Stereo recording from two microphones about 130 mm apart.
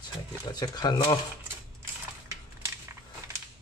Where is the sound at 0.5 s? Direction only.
30° left (ahead or behind).